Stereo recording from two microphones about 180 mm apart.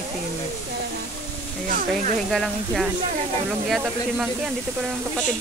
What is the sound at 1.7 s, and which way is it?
Speech, 45° right (ahead or behind).